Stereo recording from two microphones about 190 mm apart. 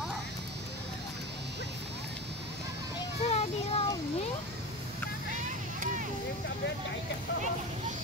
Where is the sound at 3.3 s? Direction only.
35° left (ahead or behind).